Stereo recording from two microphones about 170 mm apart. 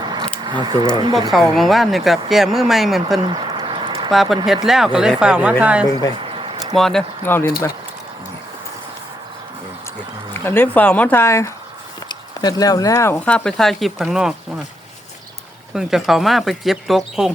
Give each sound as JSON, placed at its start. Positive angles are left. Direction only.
{"t": 0.0, "sound": "a sound", "side_deg": -25}
{"t": 1.5, "sound": "speech", "side_deg": 0}
{"t": 3.2, "sound": "a sound", "side_deg": -30}
{"t": 4.1, "sound": "speech", "side_deg": 0}
{"t": 6.1, "sound": "a sound", "side_deg": -30}
{"t": 6.7, "sound": "speech", "side_deg": 0}
{"t": 7.3, "sound": "speech", "side_deg": 10}
{"t": 10.4, "sound": "speech", "side_deg": 10}
{"t": 15.7, "sound": "speech", "side_deg": -5}